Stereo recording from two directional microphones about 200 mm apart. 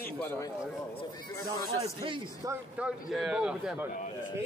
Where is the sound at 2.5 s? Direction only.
5° right (ahead or behind).